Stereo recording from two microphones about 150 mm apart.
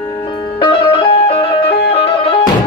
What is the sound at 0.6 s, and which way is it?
Music, 35° left (ahead or behind).